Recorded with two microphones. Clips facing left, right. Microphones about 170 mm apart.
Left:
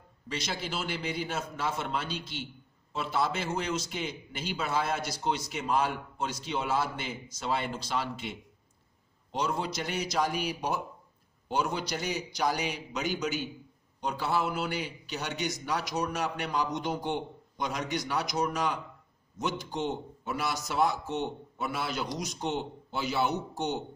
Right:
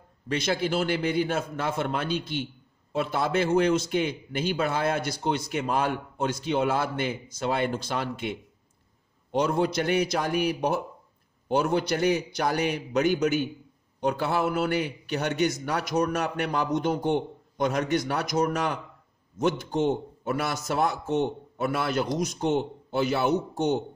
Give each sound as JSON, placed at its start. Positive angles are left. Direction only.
{"t": 0.3, "sound": "a man's voice", "side_deg": -55}